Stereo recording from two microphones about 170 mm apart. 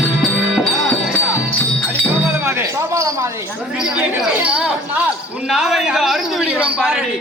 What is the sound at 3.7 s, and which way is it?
Chatter, 5° right (ahead or behind).